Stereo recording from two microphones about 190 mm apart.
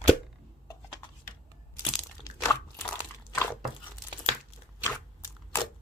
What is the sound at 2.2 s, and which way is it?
Crunch, 15° left (ahead or behind).